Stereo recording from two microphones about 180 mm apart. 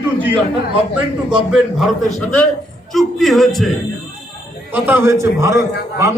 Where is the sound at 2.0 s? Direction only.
5° left (ahead or behind).